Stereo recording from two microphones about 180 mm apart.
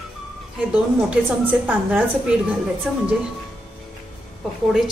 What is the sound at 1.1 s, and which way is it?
Speech, 5° right (ahead or behind).